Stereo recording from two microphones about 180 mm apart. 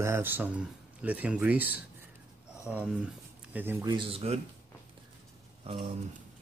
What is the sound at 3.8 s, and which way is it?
Speech, 25° right (ahead or behind).